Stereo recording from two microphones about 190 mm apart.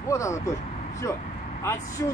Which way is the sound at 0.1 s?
15° left (ahead or behind).